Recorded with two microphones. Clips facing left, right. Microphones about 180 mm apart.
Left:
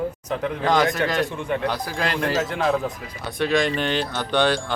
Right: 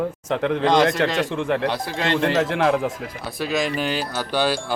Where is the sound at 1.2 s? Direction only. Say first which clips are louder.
Right 3 dB; 90° right.